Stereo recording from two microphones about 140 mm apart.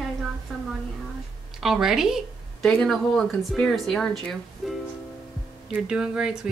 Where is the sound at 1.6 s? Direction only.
Centre (ahead or behind).